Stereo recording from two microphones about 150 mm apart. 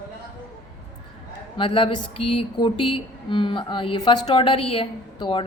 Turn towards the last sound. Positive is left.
turn(degrees=35)  # may be behind; listen again after turning